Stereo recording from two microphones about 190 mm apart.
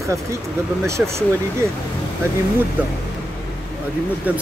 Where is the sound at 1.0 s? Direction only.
5° right (ahead or behind).